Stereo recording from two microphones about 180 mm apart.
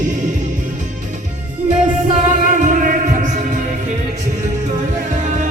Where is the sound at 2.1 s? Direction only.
45° right (ahead or behind).